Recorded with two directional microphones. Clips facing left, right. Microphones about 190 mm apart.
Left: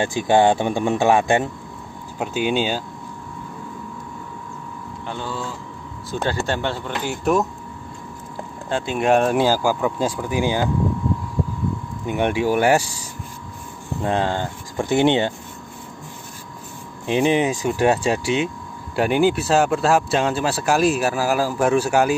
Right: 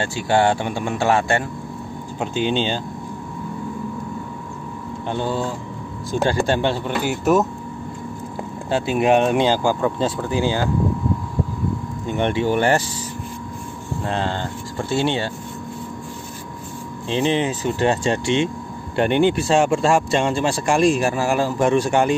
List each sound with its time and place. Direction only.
0.0 s speech: 15° left (ahead or behind)
5.0 s speech: 25° right (ahead or behind)
7.1 s speech: centre (ahead or behind)
8.6 s speech: 5° right (ahead or behind); by 10.7 s 15° left (ahead or behind)
12.1 s speech: 10° left (ahead or behind)
14.0 s speech: 15° left (ahead or behind)
17.0 s speech: 15° left (ahead or behind)